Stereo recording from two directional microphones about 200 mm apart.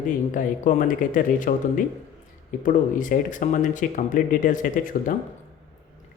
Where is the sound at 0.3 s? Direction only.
40° left (ahead or behind).